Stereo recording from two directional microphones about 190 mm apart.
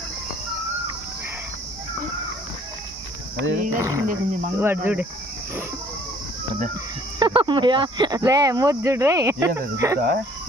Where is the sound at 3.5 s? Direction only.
45° right (ahead or behind).